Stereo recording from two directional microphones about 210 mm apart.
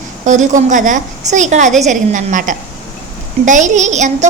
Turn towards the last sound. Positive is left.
turn(degrees=-35)  # may be behind; listen again after turning